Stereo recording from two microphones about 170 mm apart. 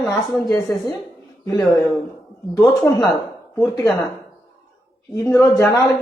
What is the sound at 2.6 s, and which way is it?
Speech, 20° left (ahead or behind).